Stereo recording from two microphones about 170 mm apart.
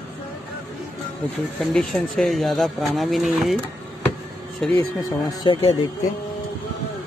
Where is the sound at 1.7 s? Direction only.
5° left (ahead or behind).